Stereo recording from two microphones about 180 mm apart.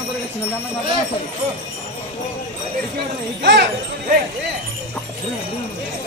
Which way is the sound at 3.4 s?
75° right (ahead or behind).